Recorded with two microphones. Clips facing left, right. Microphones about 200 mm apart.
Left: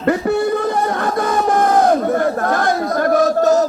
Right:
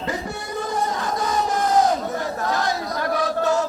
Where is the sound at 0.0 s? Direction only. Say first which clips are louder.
Left 13 dB; 60° left (ahead or behind).